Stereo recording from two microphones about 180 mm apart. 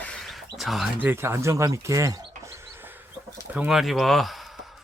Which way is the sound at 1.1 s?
15° right (ahead or behind).